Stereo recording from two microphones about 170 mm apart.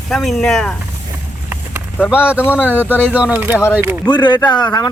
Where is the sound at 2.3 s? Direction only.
10° left (ahead or behind).